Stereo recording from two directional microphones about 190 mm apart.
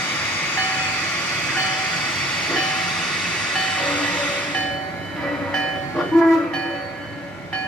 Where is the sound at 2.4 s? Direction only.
5° left (ahead or behind).